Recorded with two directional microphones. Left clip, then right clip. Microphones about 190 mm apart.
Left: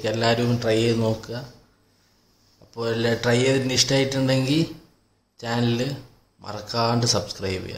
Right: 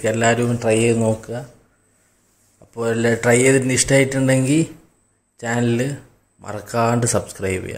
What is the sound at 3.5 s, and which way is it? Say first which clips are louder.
Speech: right 5 dB; 20° right (ahead or behind).